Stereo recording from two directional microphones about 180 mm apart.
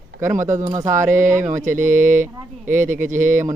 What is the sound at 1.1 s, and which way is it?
Mantra, 45° right (ahead or behind).